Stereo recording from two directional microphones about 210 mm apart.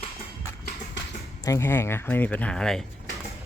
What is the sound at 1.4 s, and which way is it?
Speech, 10° left (ahead or behind).